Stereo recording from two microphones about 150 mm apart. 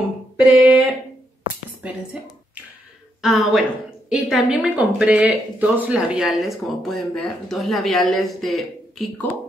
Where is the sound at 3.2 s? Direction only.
Centre (ahead or behind).